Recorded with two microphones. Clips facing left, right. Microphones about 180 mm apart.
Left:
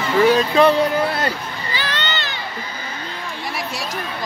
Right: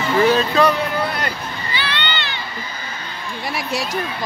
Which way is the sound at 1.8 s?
40° left (ahead or behind).